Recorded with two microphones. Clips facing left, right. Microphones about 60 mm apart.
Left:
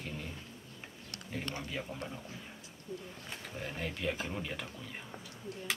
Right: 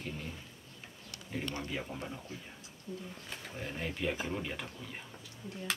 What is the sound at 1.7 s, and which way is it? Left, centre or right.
Speech, centre.